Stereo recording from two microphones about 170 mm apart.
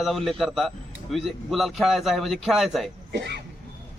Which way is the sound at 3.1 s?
85° right.